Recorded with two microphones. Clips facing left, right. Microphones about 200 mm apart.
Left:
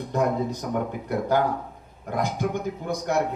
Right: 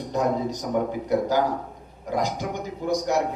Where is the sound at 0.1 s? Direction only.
55° left (ahead or behind).